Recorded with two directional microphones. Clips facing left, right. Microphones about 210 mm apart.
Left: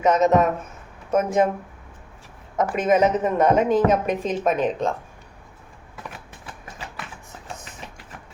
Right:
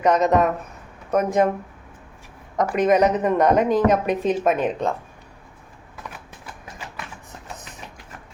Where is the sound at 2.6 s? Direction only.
5° left (ahead or behind).